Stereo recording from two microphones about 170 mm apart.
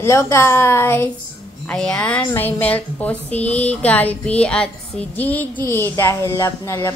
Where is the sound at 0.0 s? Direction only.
15° left (ahead or behind).